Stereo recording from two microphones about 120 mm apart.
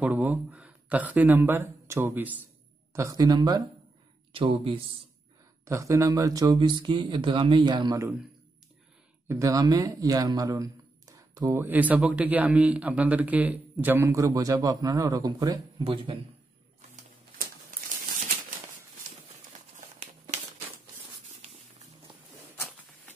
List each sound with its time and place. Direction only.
0.0 s speech: 15° right (ahead or behind)
2.9 s speech: 25° right (ahead or behind)
4.3 s speech: 50° right (ahead or behind)
5.7 s speech: 25° right (ahead or behind)
9.3 s speech: 30° right (ahead or behind)
15.8 s speech: 45° right (ahead or behind)